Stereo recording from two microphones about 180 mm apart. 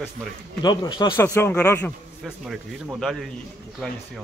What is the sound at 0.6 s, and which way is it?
Speech, 25° left (ahead or behind).